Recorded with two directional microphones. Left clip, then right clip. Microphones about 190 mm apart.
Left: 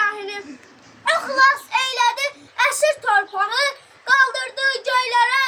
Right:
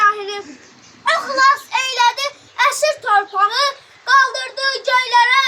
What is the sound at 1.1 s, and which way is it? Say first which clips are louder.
A child's voice: right 2 dB; 15° left (ahead or behind).